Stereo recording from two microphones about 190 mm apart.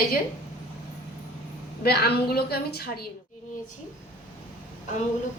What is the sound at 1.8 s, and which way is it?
A woman's voice, 55° left (ahead or behind).